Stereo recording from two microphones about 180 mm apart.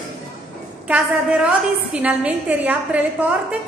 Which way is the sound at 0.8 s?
5° right (ahead or behind).